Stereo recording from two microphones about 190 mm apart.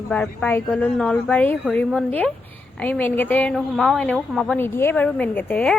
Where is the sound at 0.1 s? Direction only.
5° left (ahead or behind).